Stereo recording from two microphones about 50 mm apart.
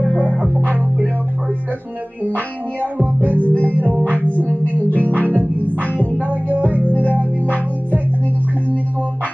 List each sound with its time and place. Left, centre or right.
0.2 s music: right
2.2 s music: right
4.2 s music: left
4.9 s music: right